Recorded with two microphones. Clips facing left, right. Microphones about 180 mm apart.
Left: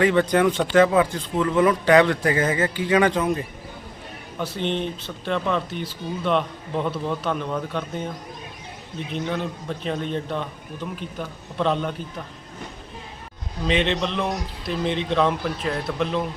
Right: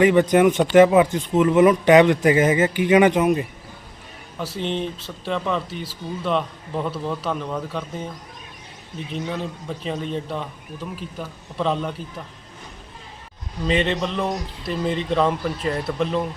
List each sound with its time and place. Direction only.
0.0 s speech: 15° right (ahead or behind)
4.4 s speech: 5° right (ahead or behind)
9.1 s speech: 5° right (ahead or behind)
13.7 s speech: 5° right (ahead or behind)